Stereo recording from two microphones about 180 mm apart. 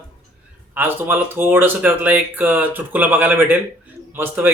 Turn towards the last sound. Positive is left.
turn(degrees=-10)  # may be behind; listen again after turning